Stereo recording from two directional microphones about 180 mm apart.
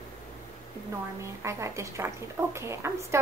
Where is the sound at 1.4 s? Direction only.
15° right (ahead or behind).